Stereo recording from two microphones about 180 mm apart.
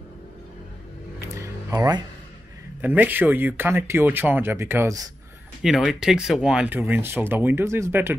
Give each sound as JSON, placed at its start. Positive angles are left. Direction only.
{"t": 1.3, "sound": "a sound", "side_deg": -15}
{"t": 2.8, "sound": "speech", "side_deg": -10}
{"t": 5.6, "sound": "speech", "side_deg": 0}